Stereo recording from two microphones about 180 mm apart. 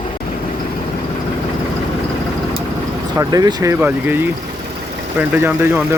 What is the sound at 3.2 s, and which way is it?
Speech, 20° right (ahead or behind).